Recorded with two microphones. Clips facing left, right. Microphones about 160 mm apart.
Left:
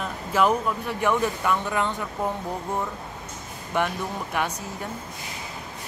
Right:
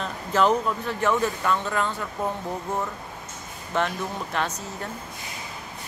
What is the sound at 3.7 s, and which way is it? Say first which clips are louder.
Speech: even; 10° left (ahead or behind).